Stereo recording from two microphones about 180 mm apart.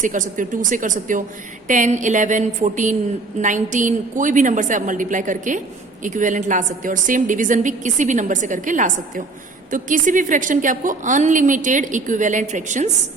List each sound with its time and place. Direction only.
0.0 s a woman's voice: 45° right (ahead or behind)